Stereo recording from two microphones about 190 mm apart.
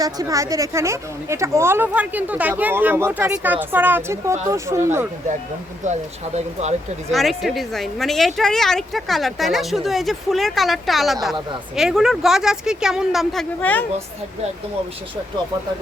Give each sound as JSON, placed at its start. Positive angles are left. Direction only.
{"t": 0.0, "sound": "speech", "side_deg": -20}
{"t": 5.8, "sound": "speech", "side_deg": -35}
{"t": 7.1, "sound": "speech", "side_deg": 0}
{"t": 13.6, "sound": "a woman's voice", "side_deg": 10}